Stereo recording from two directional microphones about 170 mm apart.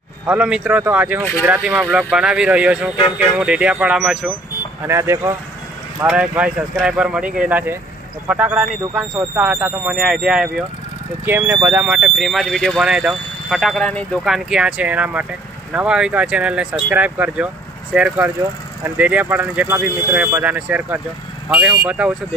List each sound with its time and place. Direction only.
0.3 s speech: 5° right (ahead or behind)
4.8 s speech: 15° right (ahead or behind)